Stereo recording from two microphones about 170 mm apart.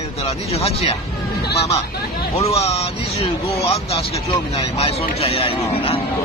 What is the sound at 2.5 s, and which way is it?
A man's voice, 35° left (ahead or behind).